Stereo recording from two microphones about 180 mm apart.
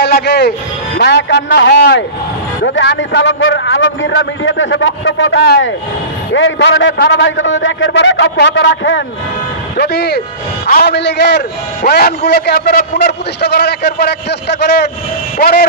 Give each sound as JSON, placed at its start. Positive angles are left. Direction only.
{"t": 0.0, "sound": "music", "side_deg": 70}
{"t": 0.9, "sound": "a man's voice", "side_deg": 70}
{"t": 9.7, "sound": "a man's voice", "side_deg": 65}
{"t": 11.8, "sound": "a man's voice", "side_deg": 55}
{"t": 15.4, "sound": "speech", "side_deg": 60}